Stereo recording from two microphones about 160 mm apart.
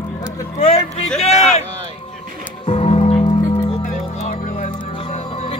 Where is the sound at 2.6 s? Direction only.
35° left (ahead or behind).